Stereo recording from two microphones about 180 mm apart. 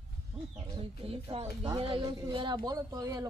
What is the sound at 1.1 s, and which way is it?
Speech, 35° right (ahead or behind).